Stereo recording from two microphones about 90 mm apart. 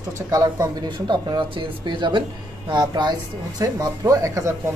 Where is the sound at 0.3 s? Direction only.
40° right (ahead or behind).